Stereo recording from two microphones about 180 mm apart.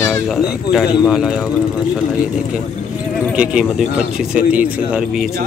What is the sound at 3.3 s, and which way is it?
Speech, 5° right (ahead or behind).